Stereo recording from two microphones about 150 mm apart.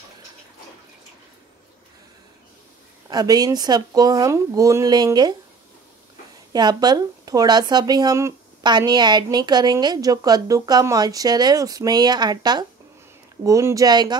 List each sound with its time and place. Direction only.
3.1 s speech: 25° right (ahead or behind)
6.5 s speech: 25° right (ahead or behind)